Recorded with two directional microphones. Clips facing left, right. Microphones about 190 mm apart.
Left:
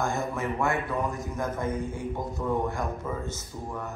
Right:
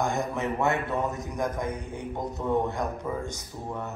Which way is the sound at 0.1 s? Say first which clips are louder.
Right 1 dB; 20° right (ahead or behind).